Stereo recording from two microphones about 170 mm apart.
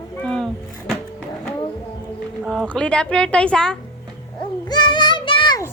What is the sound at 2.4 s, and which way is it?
A woman's voice, centre (ahead or behind).